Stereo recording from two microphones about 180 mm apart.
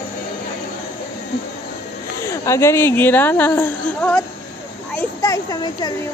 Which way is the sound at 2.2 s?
15° left (ahead or behind).